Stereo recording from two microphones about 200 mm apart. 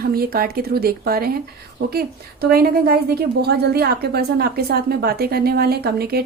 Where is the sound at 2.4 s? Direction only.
50° right (ahead or behind).